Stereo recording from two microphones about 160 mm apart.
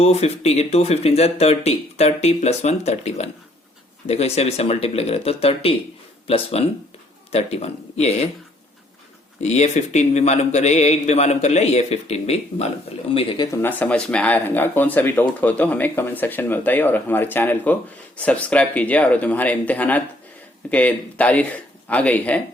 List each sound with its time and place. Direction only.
0.0 s speech: 40° left (ahead or behind)
9.4 s speech: 45° left (ahead or behind)
13.1 s speech: 30° left (ahead or behind)
13.6 s speech: 10° left (ahead or behind)